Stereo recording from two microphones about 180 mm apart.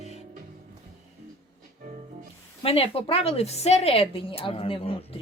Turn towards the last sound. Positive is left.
turn(degrees=30)  # may be behind; listen again after turning